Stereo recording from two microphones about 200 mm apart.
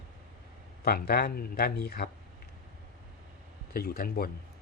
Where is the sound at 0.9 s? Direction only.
50° left (ahead or behind).